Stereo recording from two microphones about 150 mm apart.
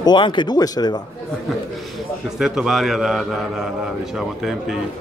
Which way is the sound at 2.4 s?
5° right (ahead or behind).